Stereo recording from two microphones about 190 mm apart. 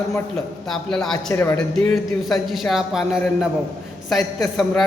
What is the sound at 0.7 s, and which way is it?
A man's voice, 5° left (ahead or behind).